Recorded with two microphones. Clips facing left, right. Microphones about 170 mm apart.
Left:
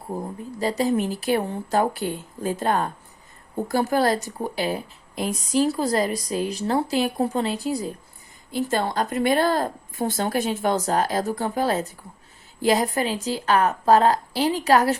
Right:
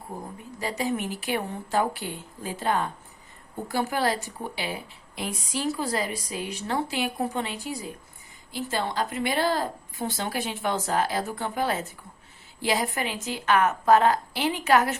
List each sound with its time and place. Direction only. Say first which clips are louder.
0.6 s a woman's voice: left 6 dB; 35° left (ahead or behind)